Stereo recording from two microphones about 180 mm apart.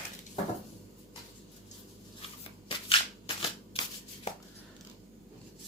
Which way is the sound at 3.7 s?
30° left (ahead or behind).